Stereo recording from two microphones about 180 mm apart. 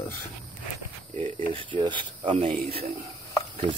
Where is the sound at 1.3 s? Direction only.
30° right (ahead or behind).